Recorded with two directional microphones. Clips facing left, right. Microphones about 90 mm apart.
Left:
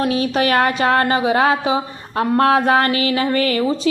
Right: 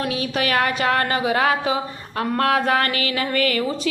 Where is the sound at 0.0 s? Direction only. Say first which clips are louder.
Left 6 dB; 35° left (ahead or behind).